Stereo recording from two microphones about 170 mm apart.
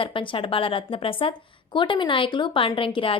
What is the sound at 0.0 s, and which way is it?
Speech, 30° left (ahead or behind).